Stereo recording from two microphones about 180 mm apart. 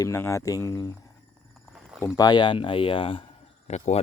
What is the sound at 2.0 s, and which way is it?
Speech, 20° left (ahead or behind).